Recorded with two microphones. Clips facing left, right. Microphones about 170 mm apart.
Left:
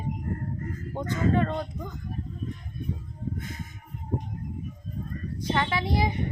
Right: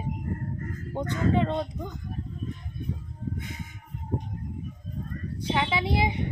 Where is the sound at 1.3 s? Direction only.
20° right (ahead or behind).